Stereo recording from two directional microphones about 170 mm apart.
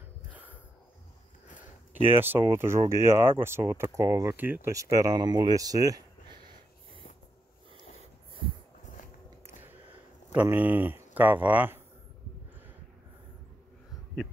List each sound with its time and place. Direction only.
0.3 s a sound: 10° right (ahead or behind)
2.0 s speech: 10° right (ahead or behind)
10.3 s speech: 10° right (ahead or behind)